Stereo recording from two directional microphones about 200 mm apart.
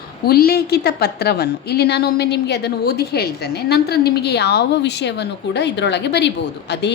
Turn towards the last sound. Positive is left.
turn(degrees=60)  # may be behind; listen again after turning